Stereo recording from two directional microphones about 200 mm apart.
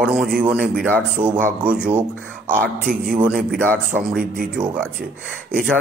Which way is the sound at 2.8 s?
45° right (ahead or behind).